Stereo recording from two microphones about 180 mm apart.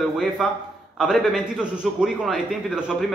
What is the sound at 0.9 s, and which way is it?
A man's voice, centre (ahead or behind).